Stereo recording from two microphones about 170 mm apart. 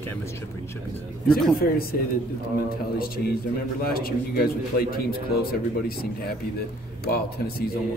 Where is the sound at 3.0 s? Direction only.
65° left (ahead or behind).